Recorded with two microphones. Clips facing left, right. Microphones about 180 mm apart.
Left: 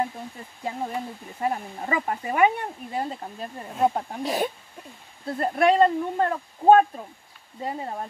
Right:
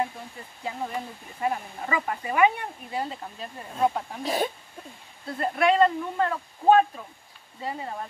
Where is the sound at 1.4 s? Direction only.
35° left (ahead or behind).